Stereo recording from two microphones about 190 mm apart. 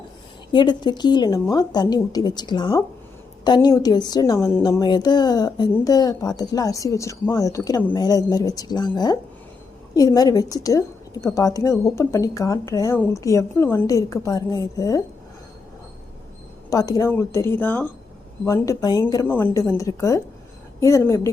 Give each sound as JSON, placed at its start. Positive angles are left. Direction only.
{"t": 0.5, "sound": "a woman's voice", "side_deg": 25}
{"t": 16.6, "sound": "a woman's voice", "side_deg": 20}